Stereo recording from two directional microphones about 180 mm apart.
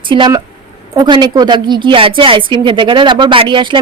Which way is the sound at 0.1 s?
25° right (ahead or behind).